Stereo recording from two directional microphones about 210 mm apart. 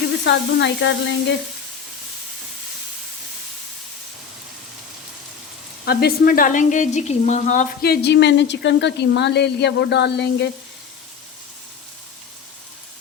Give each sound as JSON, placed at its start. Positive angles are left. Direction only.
{"t": 0.3, "sound": "speech", "side_deg": 55}
{"t": 5.8, "sound": "speech", "side_deg": 50}